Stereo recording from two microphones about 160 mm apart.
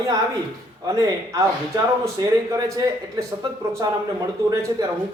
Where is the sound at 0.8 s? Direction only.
20° right (ahead or behind).